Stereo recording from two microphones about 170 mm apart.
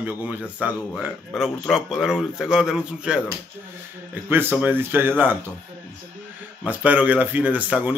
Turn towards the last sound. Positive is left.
turn(degrees=-10)  # may be behind; listen again after turning